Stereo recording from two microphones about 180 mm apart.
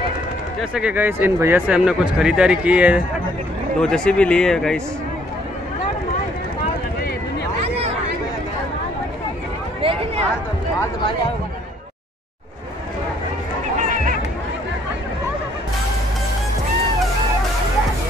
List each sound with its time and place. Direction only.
0.6 s speech: 5° right (ahead or behind)
3.8 s speech: 5° left (ahead or behind)
9.8 s a sound: 30° right (ahead or behind)